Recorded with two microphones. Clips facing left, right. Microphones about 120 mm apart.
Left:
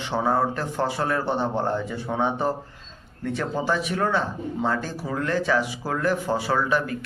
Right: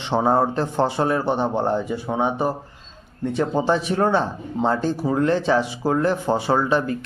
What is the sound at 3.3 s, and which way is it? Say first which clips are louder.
A man's voice: right 5 dB; 25° right (ahead or behind).